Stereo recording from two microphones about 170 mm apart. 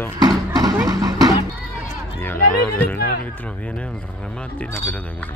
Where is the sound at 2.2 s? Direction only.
10° left (ahead or behind).